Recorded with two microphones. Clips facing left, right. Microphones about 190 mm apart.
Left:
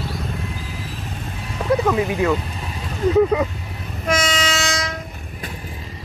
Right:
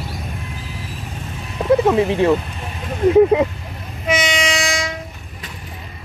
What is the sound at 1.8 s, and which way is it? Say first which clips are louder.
Speech: right 4 dB; 30° right (ahead or behind).